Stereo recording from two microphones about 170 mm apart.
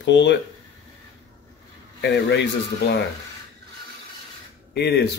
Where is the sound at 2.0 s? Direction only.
90° left.